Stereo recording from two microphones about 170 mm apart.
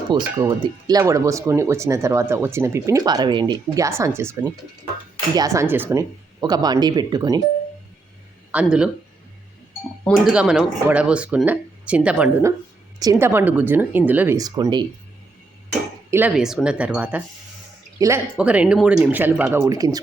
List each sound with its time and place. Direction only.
0.1 s speech: 20° right (ahead or behind)
8.5 s speech: 5° right (ahead or behind)
10.0 s speech: centre (ahead or behind)
13.0 s speech: 20° right (ahead or behind)
14.3 s speech: 20° right (ahead or behind)
16.0 s speech: 15° right (ahead or behind)
16.3 s speech: 5° right (ahead or behind)
18.3 s speech: 5° right (ahead or behind)